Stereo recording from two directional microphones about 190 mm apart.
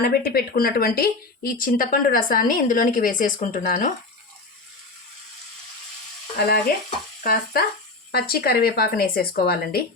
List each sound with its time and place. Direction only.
0.0 s a woman's voice: 55° left (ahead or behind)
6.4 s stir: 55° left (ahead or behind)
7.2 s a woman's voice: 50° left (ahead or behind)